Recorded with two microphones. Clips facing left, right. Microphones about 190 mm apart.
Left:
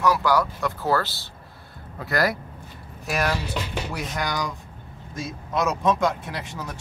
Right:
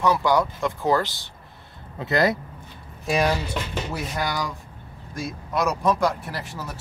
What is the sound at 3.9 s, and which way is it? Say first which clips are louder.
Speech: right 1 dB; 5° right (ahead or behind).